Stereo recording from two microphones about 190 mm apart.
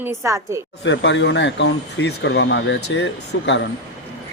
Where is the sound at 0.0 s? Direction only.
15° right (ahead or behind).